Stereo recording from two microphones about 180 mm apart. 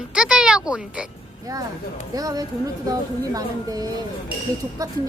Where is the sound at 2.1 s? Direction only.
20° right (ahead or behind).